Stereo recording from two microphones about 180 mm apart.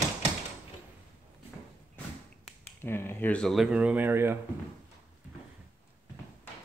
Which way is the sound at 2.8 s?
10° left (ahead or behind).